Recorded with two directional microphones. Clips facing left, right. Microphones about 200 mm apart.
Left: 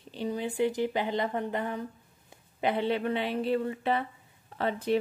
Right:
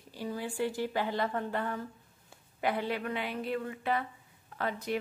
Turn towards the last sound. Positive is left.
turn(degrees=30)  # may be behind; listen again after turning